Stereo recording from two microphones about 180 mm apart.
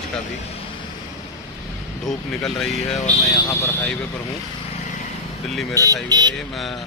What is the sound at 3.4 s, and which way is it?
Speech, 20° left (ahead or behind).